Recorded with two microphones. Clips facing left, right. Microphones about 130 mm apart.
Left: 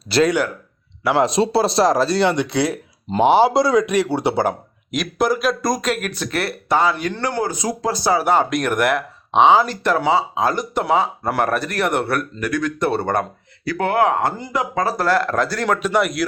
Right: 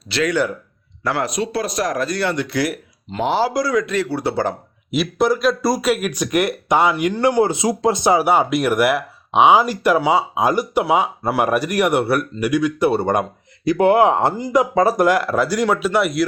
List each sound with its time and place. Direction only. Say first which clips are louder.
0.1 s speech: left 4 dB; 35° left (ahead or behind)
1.1 s speech: left 6 dB; 25° left (ahead or behind)
4.9 s speech: right 2 dB; centre (ahead or behind); by 8.3 s 20° right (ahead or behind)
8.3 s speech: right 1 dB; 5° right (ahead or behind)